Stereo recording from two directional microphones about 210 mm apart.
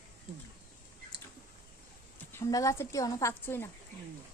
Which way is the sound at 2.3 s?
15° left (ahead or behind).